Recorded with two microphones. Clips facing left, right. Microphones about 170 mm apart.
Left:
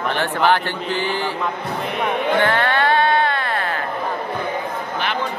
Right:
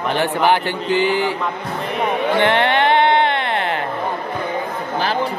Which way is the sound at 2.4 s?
20° right (ahead or behind).